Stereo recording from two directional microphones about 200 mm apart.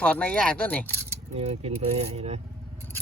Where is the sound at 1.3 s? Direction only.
30° right (ahead or behind).